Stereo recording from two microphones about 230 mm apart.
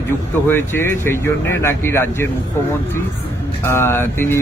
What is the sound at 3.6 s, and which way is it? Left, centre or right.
Speech, centre.